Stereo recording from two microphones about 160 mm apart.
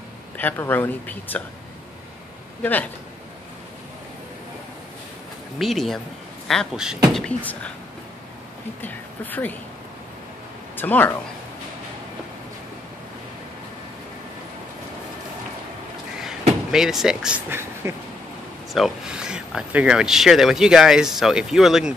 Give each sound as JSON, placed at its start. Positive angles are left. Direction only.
{"t": 0.4, "sound": "speech", "side_deg": 10}
{"t": 2.6, "sound": "speech", "side_deg": 10}
{"t": 5.6, "sound": "speech", "side_deg": 0}
{"t": 7.2, "sound": "speech", "side_deg": 10}
{"t": 8.8, "sound": "speech", "side_deg": 10}
{"t": 10.8, "sound": "speech", "side_deg": 10}
{"t": 16.2, "sound": "speech", "side_deg": -5}
{"t": 18.7, "sound": "speech", "side_deg": -5}